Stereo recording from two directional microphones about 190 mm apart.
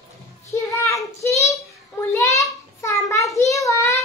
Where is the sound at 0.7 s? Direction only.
15° left (ahead or behind).